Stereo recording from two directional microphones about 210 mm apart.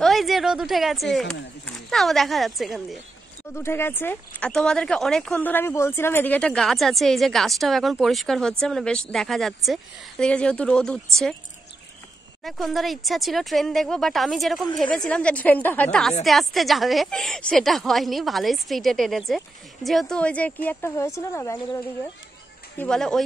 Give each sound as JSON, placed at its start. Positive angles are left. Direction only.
{"t": 0.0, "sound": "a sound", "side_deg": 0}
{"t": 1.9, "sound": "speech", "side_deg": 0}
{"t": 3.5, "sound": "speech", "side_deg": 10}
{"t": 12.4, "sound": "speech", "side_deg": 0}
{"t": 22.8, "sound": "speech", "side_deg": 5}